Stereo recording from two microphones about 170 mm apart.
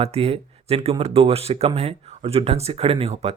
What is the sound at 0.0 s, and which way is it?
Speech, 35° right (ahead or behind).